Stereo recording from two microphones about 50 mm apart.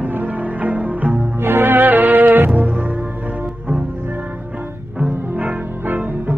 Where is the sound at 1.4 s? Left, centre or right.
Right.